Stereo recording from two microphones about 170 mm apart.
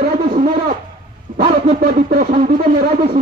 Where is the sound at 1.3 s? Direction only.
50° right (ahead or behind).